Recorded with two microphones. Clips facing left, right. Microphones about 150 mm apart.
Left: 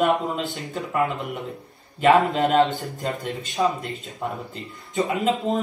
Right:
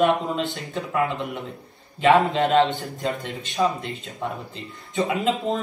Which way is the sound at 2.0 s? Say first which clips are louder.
Even; centre (ahead or behind).